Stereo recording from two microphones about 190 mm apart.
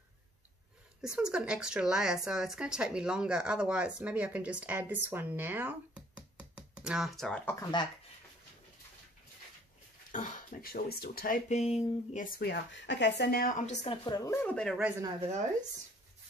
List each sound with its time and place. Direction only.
1.0 s speech: 5° right (ahead or behind)
7.5 s speech: 20° left (ahead or behind)
10.1 s speech: 40° left (ahead or behind)
12.4 s a woman's voice: 65° left (ahead or behind); by 13.7 s 45° left (ahead or behind)
13.8 s speech: 20° left (ahead or behind)
14.4 s speech: 5° left (ahead or behind)